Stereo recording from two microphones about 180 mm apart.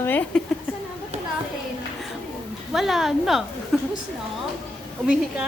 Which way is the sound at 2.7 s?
Centre (ahead or behind).